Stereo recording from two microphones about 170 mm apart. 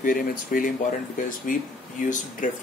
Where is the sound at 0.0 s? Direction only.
55° left (ahead or behind).